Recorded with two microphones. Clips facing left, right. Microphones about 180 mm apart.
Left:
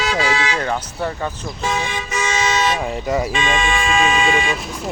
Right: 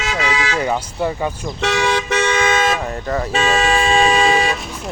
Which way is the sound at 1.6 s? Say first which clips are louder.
Right 6 dB; 85° right.